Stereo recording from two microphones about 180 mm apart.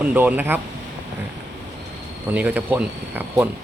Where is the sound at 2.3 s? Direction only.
10° right (ahead or behind).